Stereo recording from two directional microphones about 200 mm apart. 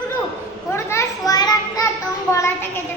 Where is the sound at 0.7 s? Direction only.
15° left (ahead or behind).